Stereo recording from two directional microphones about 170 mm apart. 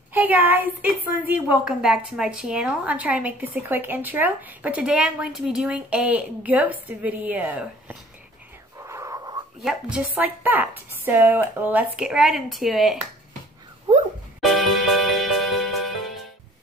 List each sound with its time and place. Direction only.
0.1 s a woman's voice: 10° right (ahead or behind)
8.8 s wheeze: 20° right (ahead or behind)
9.6 s a woman's voice: 5° right (ahead or behind)
14.4 s music: centre (ahead or behind)